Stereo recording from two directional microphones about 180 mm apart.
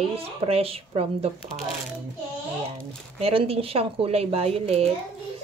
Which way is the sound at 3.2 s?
30° right (ahead or behind).